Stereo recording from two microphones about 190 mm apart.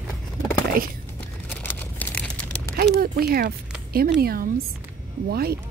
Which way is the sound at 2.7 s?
50° right (ahead or behind).